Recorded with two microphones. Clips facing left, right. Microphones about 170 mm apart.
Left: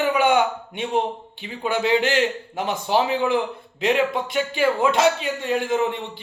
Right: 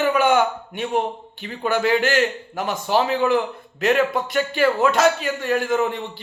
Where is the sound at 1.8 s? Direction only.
20° left (ahead or behind).